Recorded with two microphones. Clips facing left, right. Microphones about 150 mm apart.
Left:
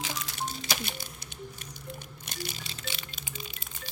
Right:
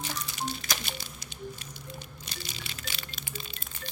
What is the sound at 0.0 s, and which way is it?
Music, 90° left.